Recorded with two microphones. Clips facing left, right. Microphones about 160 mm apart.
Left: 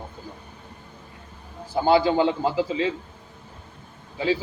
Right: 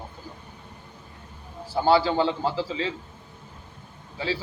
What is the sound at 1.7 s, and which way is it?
Speech, 15° left (ahead or behind).